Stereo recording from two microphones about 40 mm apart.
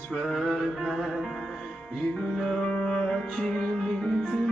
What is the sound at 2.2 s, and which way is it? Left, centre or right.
Music, centre.